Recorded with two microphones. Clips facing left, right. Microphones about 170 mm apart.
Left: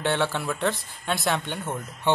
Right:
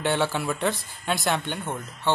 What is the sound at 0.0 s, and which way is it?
Speech, centre (ahead or behind).